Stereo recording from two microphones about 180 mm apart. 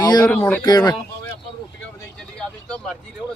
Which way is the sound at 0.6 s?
20° left (ahead or behind).